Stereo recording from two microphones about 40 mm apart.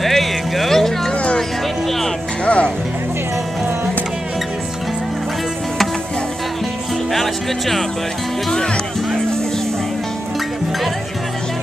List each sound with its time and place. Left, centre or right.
0.0 s music: centre
1.1 s music: left
2.4 s music: left
7.1 s music: centre